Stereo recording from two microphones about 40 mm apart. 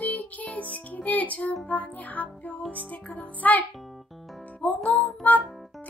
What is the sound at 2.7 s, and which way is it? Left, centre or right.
Music, left.